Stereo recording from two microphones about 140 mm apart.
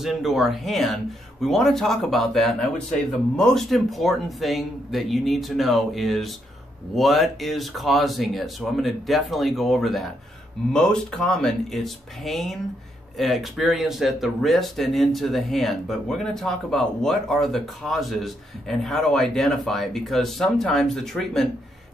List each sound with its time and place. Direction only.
0.0 s speech: centre (ahead or behind)